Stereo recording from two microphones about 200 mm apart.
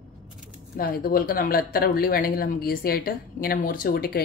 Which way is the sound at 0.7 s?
45° left (ahead or behind).